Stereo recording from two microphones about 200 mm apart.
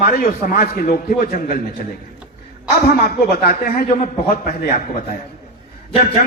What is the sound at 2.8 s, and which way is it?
A man's voice, 50° left (ahead or behind).